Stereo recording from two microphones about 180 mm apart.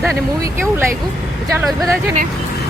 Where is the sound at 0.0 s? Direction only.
15° right (ahead or behind).